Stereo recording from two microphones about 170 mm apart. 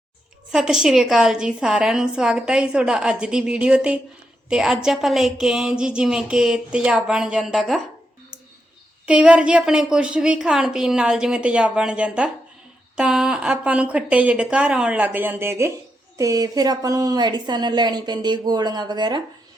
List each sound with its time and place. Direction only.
0.5 s a woman's voice: 5° right (ahead or behind)
9.0 s a woman's voice: 5° right (ahead or behind); by 19.2 s 25° right (ahead or behind)